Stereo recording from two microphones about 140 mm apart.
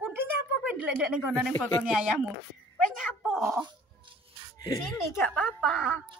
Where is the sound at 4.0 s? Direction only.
35° right (ahead or behind).